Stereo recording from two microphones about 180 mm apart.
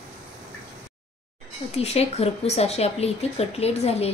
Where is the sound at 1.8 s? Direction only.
35° left (ahead or behind).